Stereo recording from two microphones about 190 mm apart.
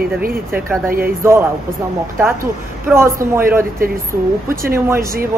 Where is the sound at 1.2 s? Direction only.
15° right (ahead or behind).